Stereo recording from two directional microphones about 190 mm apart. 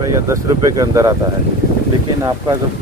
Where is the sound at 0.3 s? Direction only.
15° right (ahead or behind).